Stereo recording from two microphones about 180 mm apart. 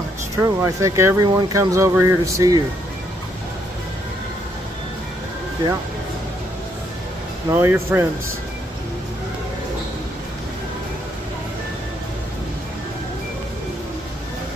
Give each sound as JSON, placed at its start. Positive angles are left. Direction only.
{"t": 0.4, "sound": "speech", "side_deg": -15}
{"t": 7.5, "sound": "speech", "side_deg": -10}